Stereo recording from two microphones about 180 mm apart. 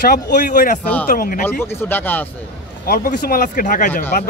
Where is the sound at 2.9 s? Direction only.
50° left (ahead or behind).